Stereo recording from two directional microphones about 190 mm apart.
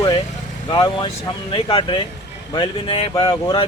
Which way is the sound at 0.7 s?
25° left (ahead or behind).